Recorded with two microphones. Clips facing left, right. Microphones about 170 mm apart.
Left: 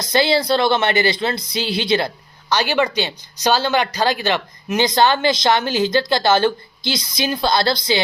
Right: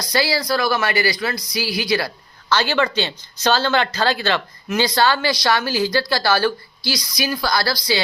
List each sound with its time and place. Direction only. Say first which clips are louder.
0.0 s speech: left 4 dB; 25° left (ahead or behind)